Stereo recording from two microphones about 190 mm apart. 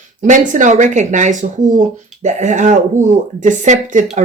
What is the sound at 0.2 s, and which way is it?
Speech, 40° right (ahead or behind).